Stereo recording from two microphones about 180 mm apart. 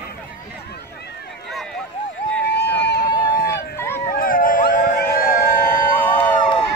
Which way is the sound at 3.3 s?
55° left (ahead or behind).